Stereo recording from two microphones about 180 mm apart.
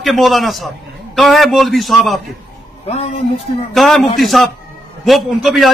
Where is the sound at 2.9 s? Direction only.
35° left (ahead or behind).